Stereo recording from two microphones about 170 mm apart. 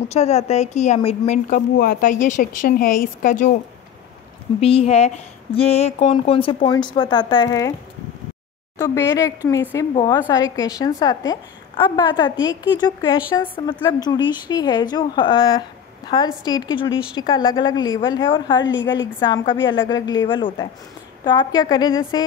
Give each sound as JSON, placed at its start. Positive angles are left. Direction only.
{"t": 0.1, "sound": "speech", "side_deg": 40}
{"t": 1.8, "sound": "speech", "side_deg": 55}
{"t": 4.6, "sound": "speech", "side_deg": 35}
{"t": 8.7, "sound": "a woman's voice", "side_deg": 20}
{"t": 18.6, "sound": "a woman's voice", "side_deg": 90}
{"t": 19.1, "sound": "a woman's voice", "side_deg": 25}